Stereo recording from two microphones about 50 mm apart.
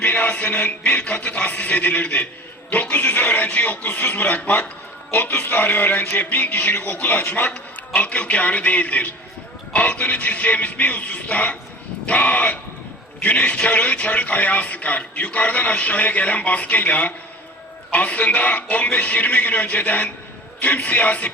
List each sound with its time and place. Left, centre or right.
0.0 s speech: left